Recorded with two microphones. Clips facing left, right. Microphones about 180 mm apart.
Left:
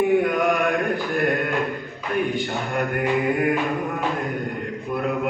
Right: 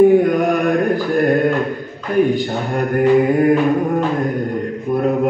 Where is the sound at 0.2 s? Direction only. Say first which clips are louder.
Right 5 dB; 40° right (ahead or behind).